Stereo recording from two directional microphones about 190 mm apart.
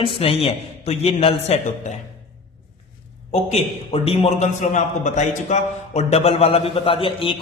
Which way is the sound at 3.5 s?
35° left (ahead or behind).